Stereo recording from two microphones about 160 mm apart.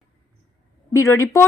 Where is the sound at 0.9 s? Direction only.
20° left (ahead or behind).